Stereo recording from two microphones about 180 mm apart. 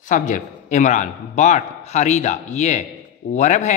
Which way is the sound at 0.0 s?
45° left (ahead or behind).